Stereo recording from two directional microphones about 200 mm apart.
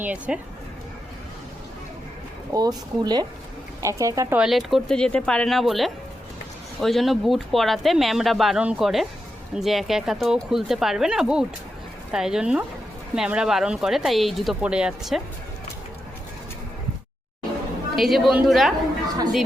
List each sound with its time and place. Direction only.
0.0 s speech: 5° right (ahead or behind)
2.5 s speech: 20° right (ahead or behind); by 15.2 s 5° right (ahead or behind)
17.9 s speech: centre (ahead or behind)